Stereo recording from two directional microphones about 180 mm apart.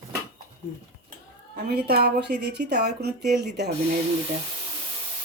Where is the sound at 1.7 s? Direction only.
60° right (ahead or behind).